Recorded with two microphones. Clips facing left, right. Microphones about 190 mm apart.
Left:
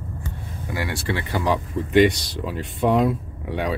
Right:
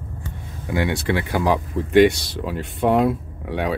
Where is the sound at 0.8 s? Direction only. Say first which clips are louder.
Right 5 dB; 20° right (ahead or behind).